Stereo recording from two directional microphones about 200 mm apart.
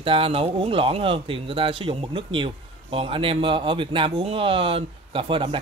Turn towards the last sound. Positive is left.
turn(degrees=-25)  # may be behind; listen again after turning